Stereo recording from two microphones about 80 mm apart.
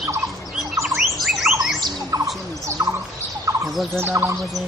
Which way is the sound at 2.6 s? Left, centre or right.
Right.